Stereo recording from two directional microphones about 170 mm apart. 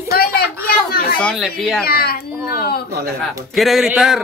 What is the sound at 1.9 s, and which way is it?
Speech, 65° left (ahead or behind).